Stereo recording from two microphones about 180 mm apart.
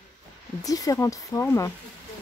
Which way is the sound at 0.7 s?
20° left (ahead or behind).